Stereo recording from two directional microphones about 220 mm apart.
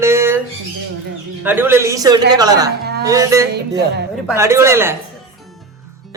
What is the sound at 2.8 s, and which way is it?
Music, 45° right (ahead or behind).